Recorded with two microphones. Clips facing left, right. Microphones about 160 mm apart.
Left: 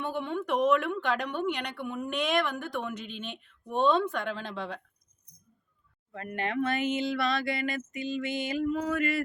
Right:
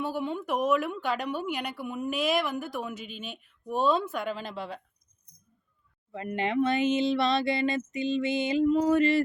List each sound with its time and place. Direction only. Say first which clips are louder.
0.0 s a woman's voice: right 1 dB; 5° right (ahead or behind)
6.1 s speech: right 3 dB; 20° right (ahead or behind)